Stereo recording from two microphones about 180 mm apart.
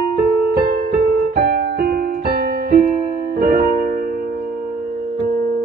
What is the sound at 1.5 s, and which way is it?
Music, 55° right (ahead or behind).